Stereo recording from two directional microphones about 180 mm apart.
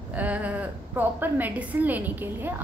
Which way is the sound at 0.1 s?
10° right (ahead or behind).